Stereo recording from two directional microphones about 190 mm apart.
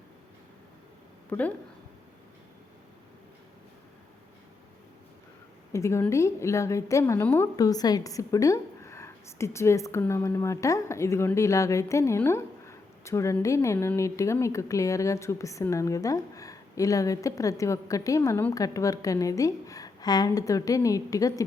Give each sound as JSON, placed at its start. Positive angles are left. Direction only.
{"t": 1.3, "sound": "a woman's voice", "side_deg": 10}
{"t": 5.7, "sound": "a woman's voice", "side_deg": 15}